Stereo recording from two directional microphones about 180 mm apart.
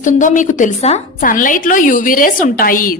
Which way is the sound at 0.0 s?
45° left (ahead or behind).